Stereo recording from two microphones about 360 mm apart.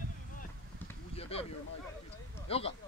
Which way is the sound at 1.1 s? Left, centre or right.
Centre.